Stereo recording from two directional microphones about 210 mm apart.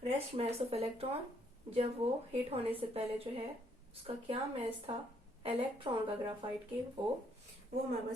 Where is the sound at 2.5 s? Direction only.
25° right (ahead or behind).